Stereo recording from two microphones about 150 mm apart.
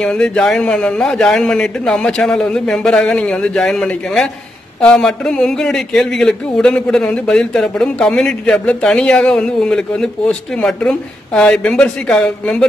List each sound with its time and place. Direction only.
0.0 s a man's voice: 5° left (ahead or behind)